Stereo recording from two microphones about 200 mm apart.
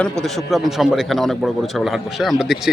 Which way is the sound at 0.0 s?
Centre (ahead or behind).